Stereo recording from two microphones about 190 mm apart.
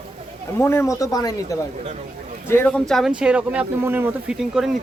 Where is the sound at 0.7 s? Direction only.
15° left (ahead or behind).